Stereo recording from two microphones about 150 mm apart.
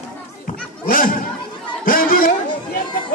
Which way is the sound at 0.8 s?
65° left (ahead or behind).